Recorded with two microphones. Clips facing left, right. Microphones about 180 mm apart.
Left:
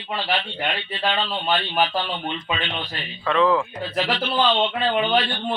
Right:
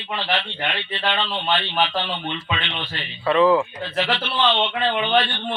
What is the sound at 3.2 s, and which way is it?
Speech, 5° right (ahead or behind).